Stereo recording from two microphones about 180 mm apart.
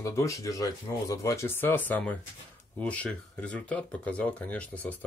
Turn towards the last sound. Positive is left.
turn(degrees=10)  # may be behind; listen again after turning